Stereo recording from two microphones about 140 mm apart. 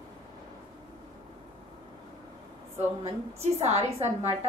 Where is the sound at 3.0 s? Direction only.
50° right (ahead or behind).